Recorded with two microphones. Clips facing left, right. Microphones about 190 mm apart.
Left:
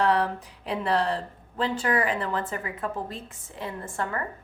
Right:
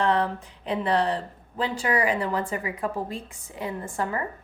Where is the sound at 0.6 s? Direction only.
Centre (ahead or behind).